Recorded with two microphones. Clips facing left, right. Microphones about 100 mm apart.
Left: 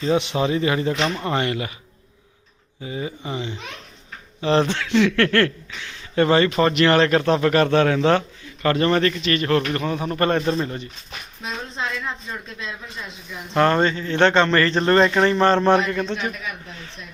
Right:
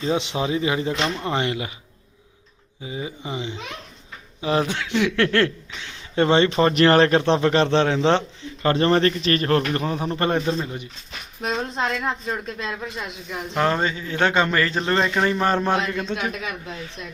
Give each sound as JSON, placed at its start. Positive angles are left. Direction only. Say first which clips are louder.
{"t": 0.0, "sound": "a man's voice", "louder": "left 3 dB", "side_deg": -15}
{"t": 2.8, "sound": "a man's voice", "louder": "left 2 dB", "side_deg": -15}
{"t": 10.2, "sound": "a man's voice", "louder": "left 3 dB", "side_deg": -15}
{"t": 11.4, "sound": "a woman's voice", "louder": "right 5 dB", "side_deg": -55}
{"t": 13.5, "sound": "a man's voice", "louder": "left 4 dB", "side_deg": -5}